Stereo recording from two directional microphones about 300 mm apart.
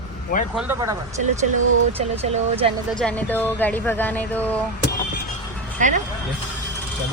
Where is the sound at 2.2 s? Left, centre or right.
Right.